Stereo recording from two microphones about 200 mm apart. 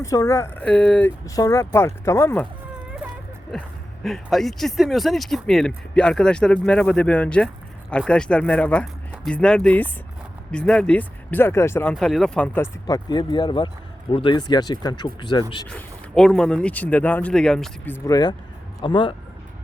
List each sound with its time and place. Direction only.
0.0 s speech: 15° left (ahead or behind)
3.5 s speech: centre (ahead or behind)
12.9 s speech: 20° left (ahead or behind)
15.7 s speech: 5° left (ahead or behind); by 19.1 s 25° left (ahead or behind)